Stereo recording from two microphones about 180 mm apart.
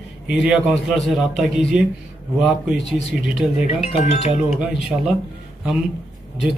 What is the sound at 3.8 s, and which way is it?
Speech, 35° left (ahead or behind).